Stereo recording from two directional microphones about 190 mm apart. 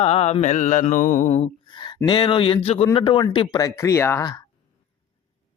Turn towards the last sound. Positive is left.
turn(degrees=20)  # may be behind; listen again after turning